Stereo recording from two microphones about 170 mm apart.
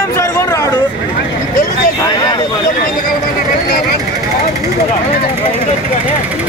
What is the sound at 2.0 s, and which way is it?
Vehicle, 25° left (ahead or behind).